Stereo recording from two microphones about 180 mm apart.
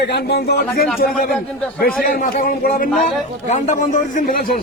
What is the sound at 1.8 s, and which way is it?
A man's voice, 55° left (ahead or behind).